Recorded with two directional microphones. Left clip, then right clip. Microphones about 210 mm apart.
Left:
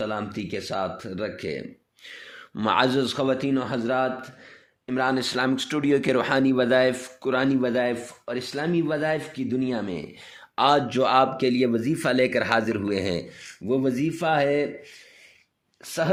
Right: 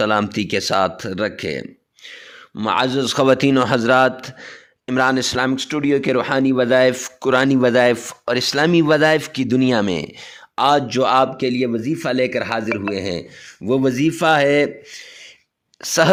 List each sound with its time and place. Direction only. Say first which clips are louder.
0.0 s speech: right 11 dB; 45° right (ahead or behind)
2.6 s speech: right 3 dB; 20° right (ahead or behind)
3.0 s speech: right 9 dB; 40° right (ahead or behind)
4.9 s speech: right 7 dB; 35° right (ahead or behind)
10.5 s speech: right 4 dB; 25° right (ahead or behind)
13.7 s speech: right 7 dB; 40° right (ahead or behind)